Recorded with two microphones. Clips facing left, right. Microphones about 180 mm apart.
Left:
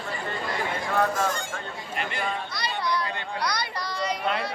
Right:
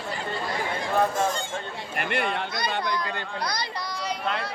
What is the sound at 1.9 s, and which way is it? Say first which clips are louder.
Speech: right 3 dB; 60° right (ahead or behind).